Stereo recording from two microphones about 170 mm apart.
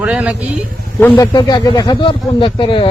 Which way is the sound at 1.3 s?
25° left (ahead or behind).